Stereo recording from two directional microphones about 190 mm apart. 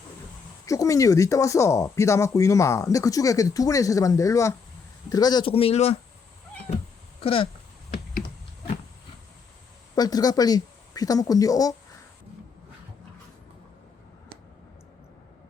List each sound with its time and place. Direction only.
0.7 s speech: 15° left (ahead or behind); by 6.0 s 30° left (ahead or behind)
7.2 s speech: 30° left (ahead or behind)
9.9 s speech: 20° left (ahead or behind)